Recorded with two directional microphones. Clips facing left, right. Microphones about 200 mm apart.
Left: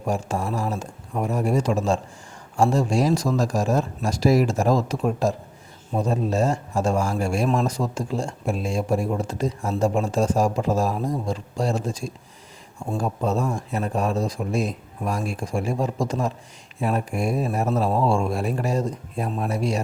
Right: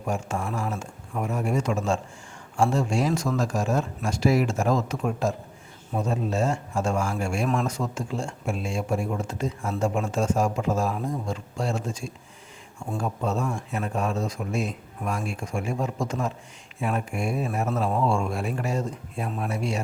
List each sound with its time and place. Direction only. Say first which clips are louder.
0.0 s speech: left 3 dB; 35° left (ahead or behind)